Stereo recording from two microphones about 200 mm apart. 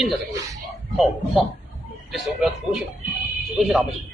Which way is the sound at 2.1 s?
Centre (ahead or behind).